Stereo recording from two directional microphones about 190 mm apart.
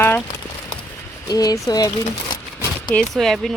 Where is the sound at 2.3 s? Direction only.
20° left (ahead or behind).